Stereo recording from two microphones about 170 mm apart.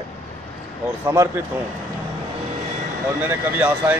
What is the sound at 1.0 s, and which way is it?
Speech, 15° right (ahead or behind).